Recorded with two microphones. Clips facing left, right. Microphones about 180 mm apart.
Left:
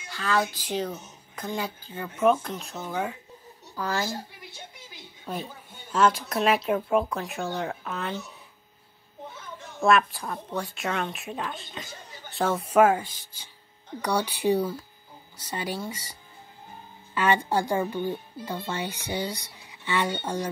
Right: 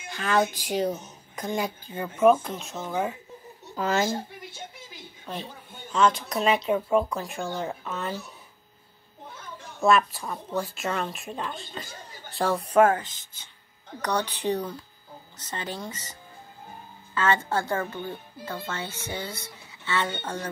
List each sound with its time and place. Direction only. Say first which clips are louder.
0.1 s speech: right 2 dB; 20° right (ahead or behind)
2.1 s a woman's voice: right 3 dB; 5° right (ahead or behind)
3.7 s speech: right 4 dB; 20° right (ahead or behind)
5.2 s a woman's voice: left 2 dB; 5° left (ahead or behind)
9.8 s a woman's voice: even; centre (ahead or behind)